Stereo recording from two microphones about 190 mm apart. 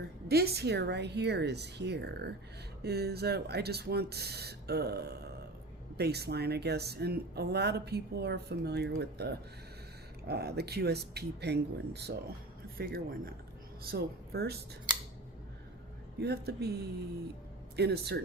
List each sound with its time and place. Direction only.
0.3 s speech: 55° right (ahead or behind)
12.7 s speech: 50° right (ahead or behind)
16.2 s speech: 55° right (ahead or behind)